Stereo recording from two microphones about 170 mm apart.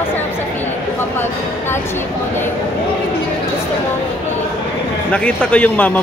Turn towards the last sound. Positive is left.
turn(degrees=10)  # may be behind; listen again after turning